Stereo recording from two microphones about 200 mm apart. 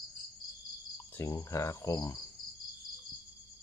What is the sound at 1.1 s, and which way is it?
Cricket, 15° left (ahead or behind).